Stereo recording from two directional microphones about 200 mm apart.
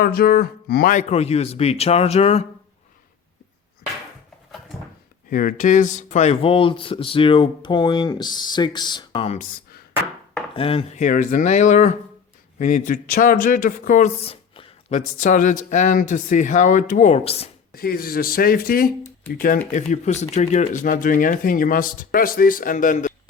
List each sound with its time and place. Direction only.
0.0 s speech: 50° left (ahead or behind); by 2.4 s 35° left (ahead or behind)
5.3 s speech: 45° left (ahead or behind)
10.5 s speech: 25° left (ahead or behind); by 14.1 s 40° left (ahead or behind)
14.3 s speech: 30° left (ahead or behind)
17.7 s speech: 50° left (ahead or behind)